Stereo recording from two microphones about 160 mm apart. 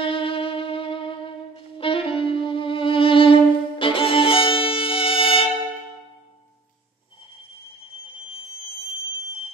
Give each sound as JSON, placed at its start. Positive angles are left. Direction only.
{"t": 0.0, "sound": "music", "side_deg": 35}